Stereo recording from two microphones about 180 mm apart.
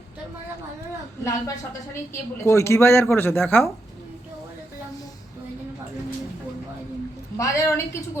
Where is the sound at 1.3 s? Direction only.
20° left (ahead or behind).